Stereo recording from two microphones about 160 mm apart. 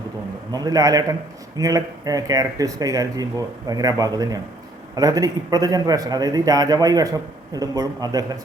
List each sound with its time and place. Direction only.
0.5 s a man's voice: 25° right (ahead or behind)